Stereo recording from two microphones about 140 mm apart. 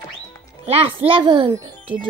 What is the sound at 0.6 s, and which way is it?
Speech, 40° right (ahead or behind).